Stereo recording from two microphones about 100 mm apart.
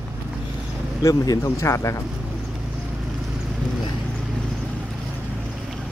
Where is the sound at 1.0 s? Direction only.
35° left (ahead or behind).